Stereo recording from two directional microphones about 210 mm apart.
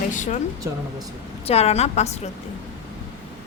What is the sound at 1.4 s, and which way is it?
Speech, 30° left (ahead or behind).